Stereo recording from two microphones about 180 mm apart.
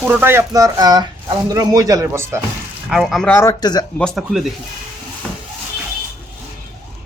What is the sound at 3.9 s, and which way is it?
Speech, centre (ahead or behind).